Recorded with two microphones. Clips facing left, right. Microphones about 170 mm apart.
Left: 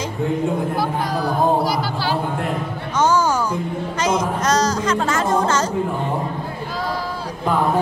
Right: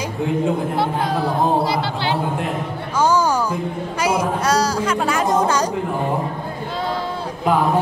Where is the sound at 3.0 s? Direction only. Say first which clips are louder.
Even; 15° right (ahead or behind).